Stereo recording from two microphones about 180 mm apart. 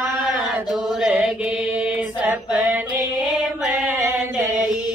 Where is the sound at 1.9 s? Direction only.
5° right (ahead or behind).